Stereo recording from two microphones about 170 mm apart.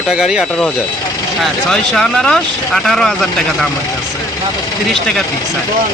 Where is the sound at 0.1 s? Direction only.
5° right (ahead or behind).